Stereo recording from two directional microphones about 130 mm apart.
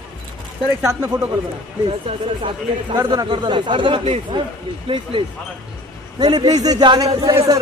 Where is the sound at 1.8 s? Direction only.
40° right (ahead or behind).